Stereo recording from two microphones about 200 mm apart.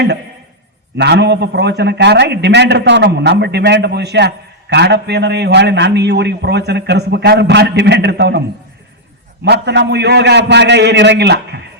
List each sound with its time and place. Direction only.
0.9 s a man's voice: 55° right (ahead or behind)